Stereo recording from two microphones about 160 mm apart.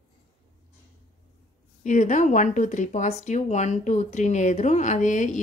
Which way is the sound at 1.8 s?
50° left (ahead or behind).